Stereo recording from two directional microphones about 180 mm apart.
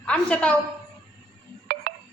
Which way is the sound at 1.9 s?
50° right (ahead or behind).